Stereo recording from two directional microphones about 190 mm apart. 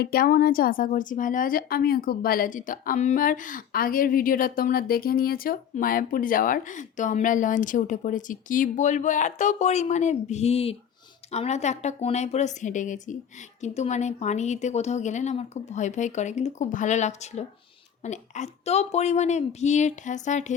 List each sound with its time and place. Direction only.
0.0 s a woman's voice: 50° left (ahead or behind)